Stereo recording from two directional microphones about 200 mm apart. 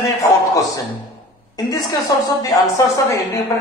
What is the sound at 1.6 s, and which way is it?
A woman's voice, 20° left (ahead or behind).